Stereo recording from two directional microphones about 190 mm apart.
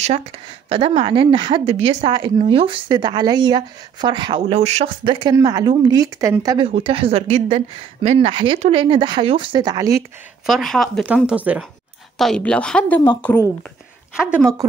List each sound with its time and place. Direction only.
0.7 s a woman's voice: 30° right (ahead or behind)
6.7 s a woman's voice: 30° right (ahead or behind)
10.4 s speech: centre (ahead or behind)
12.2 s speech: 5° left (ahead or behind)
14.1 s speech: 5° right (ahead or behind)